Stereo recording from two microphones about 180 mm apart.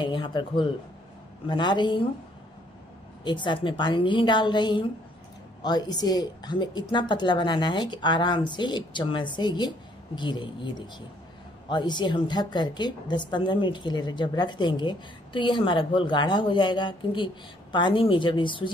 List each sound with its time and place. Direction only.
0.0 s a woman's voice: 25° left (ahead or behind)
3.3 s a woman's voice: 25° left (ahead or behind)